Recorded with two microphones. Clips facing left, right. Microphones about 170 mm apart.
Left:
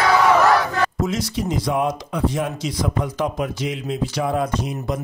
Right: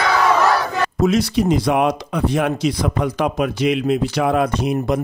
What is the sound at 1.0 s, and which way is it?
Speech, 70° right (ahead or behind).